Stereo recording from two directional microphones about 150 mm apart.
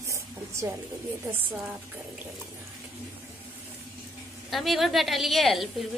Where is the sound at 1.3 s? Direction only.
10° right (ahead or behind).